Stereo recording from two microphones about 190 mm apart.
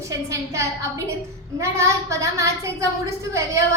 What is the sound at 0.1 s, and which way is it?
A woman's voice, 15° right (ahead or behind).